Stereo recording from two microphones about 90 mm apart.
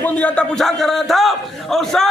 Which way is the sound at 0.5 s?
Centre (ahead or behind).